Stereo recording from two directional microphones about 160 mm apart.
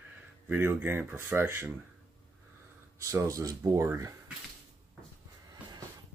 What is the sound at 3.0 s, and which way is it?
Speech, 20° right (ahead or behind).